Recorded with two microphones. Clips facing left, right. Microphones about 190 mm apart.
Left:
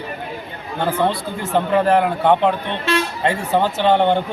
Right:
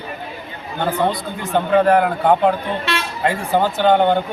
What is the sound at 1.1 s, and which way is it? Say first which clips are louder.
Speech: even; 25° left (ahead or behind).